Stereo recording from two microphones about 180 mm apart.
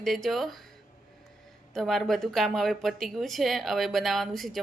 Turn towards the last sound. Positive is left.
turn(degrees=0)  # may be behind; listen again after turning